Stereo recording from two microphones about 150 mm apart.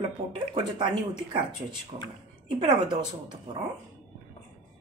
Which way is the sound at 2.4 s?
30° right (ahead or behind).